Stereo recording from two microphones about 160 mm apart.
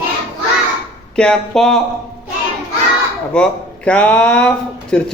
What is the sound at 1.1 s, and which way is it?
Speech, 5° left (ahead or behind).